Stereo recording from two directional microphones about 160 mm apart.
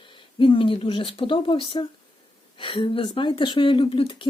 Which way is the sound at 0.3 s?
30° left (ahead or behind).